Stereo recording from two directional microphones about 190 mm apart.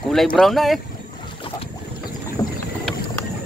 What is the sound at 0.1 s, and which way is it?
Speech, centre (ahead or behind).